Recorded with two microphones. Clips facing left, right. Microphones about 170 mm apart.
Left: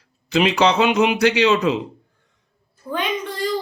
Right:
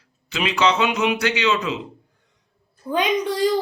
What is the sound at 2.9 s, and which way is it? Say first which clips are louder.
Speech: right 4 dB; 15° right (ahead or behind).